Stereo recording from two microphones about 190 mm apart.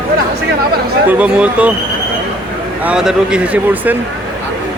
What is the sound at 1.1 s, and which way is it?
Speech, 5° right (ahead or behind).